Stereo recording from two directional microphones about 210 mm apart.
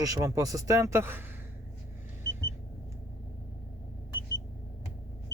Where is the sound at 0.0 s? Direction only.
15° right (ahead or behind).